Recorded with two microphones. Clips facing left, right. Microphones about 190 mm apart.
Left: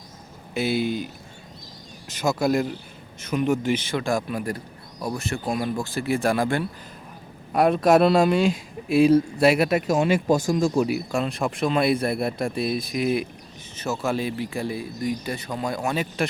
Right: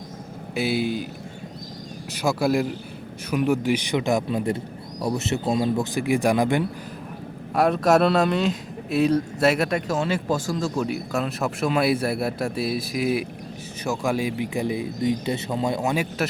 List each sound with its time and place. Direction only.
0.5 s speech: 5° right (ahead or behind)
2.2 s speech: 5° right (ahead or behind)
7.5 s speech: centre (ahead or behind); by 16.0 s 20° right (ahead or behind)